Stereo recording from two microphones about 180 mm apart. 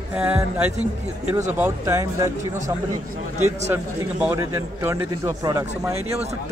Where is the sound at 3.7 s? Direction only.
15° right (ahead or behind).